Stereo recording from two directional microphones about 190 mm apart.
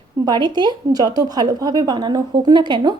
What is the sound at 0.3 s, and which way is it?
A woman's voice, 20° right (ahead or behind).